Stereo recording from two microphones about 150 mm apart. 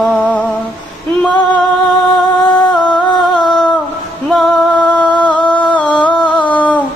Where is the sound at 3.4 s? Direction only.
30° left (ahead or behind).